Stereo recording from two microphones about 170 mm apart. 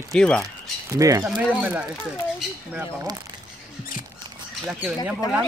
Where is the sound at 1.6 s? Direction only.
5° right (ahead or behind).